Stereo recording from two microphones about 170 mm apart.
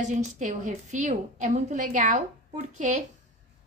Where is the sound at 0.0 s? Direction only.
45° right (ahead or behind).